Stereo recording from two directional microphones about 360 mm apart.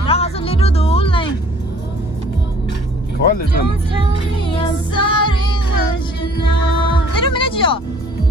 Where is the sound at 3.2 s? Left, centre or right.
Left.